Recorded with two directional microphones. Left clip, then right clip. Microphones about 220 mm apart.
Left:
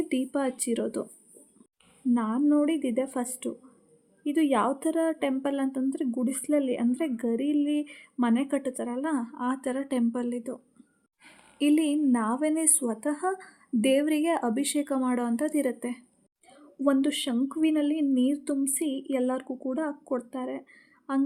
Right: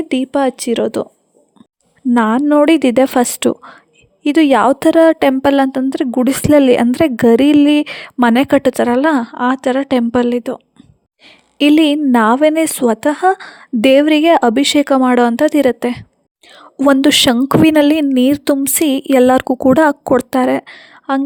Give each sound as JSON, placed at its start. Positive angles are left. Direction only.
{"t": 0.0, "sound": "speech", "side_deg": -40}
{"t": 2.1, "sound": "a woman's voice", "side_deg": -50}